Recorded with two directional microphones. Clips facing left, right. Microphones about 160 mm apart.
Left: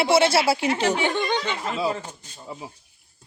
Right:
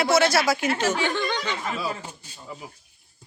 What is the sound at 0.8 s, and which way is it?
Speech, 15° left (ahead or behind).